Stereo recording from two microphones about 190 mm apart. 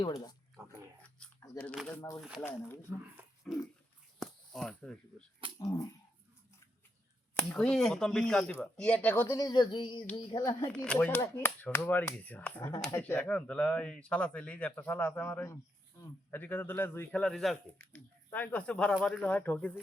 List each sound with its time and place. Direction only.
0.0 s a woman's voice: 20° left (ahead or behind)
1.2 s a sound: 5° left (ahead or behind)
2.4 s speech: 10° left (ahead or behind)
4.2 s a sound: centre (ahead or behind)
5.5 s dog: 20° left (ahead or behind)
7.3 s a woman's voice: 5° left (ahead or behind); by 10.7 s 20° left (ahead or behind)
10.8 s speech: 10° left (ahead or behind)